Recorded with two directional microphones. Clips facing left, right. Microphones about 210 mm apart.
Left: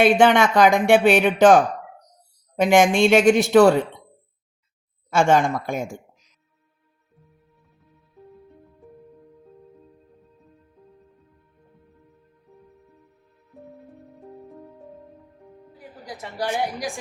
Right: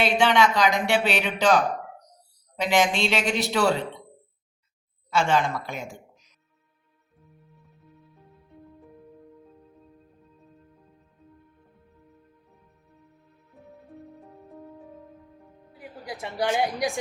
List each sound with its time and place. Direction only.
0.0 s speech: 50° left (ahead or behind)
5.1 s speech: 50° left (ahead or behind)
16.0 s a woman's voice: 15° right (ahead or behind)